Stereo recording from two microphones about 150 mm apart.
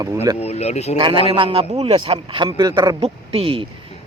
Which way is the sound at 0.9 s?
35° right (ahead or behind).